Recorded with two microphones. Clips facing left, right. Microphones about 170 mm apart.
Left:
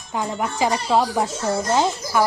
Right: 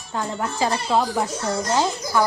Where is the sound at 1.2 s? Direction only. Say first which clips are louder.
Left 2 dB; 25° left (ahead or behind).